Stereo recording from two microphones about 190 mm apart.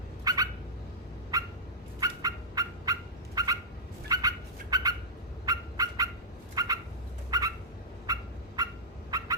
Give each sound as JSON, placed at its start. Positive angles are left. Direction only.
{"t": 0.3, "sound": "a sound", "side_deg": -20}
{"t": 2.0, "sound": "fowl", "side_deg": -20}
{"t": 4.1, "sound": "bird", "side_deg": -20}
{"t": 5.5, "sound": "fowl", "side_deg": -20}
{"t": 6.6, "sound": "a sound", "side_deg": -20}
{"t": 8.0, "sound": "fowl", "side_deg": -20}